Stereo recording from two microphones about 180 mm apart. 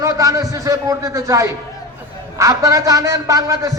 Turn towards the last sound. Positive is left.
turn(degrees=-20)  # may be behind; listen again after turning